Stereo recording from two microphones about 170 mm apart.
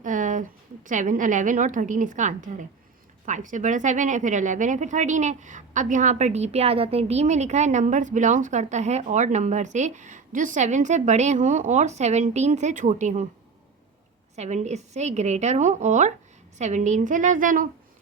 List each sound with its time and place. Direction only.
0.0 s a sound: 50° right (ahead or behind)
0.9 s speech: 50° right (ahead or behind)
14.3 s speech: 40° right (ahead or behind)